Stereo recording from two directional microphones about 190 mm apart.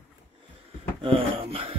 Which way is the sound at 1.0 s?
30° right (ahead or behind).